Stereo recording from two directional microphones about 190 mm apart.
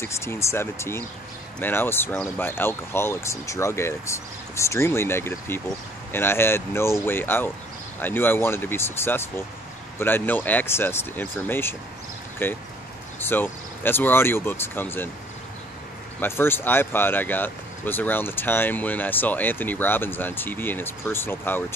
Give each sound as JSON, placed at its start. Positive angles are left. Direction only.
{"t": 0.0, "sound": "speech", "side_deg": 15}
{"t": 16.2, "sound": "speech", "side_deg": 10}